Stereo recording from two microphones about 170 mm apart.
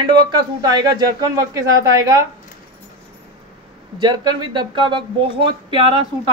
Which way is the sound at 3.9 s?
25° right (ahead or behind).